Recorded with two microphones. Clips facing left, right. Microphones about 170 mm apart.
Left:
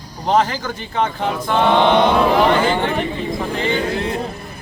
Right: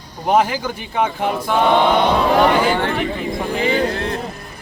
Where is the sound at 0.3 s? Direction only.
10° right (ahead or behind).